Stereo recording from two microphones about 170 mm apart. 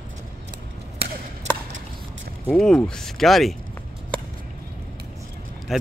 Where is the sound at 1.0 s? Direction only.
70° right (ahead or behind).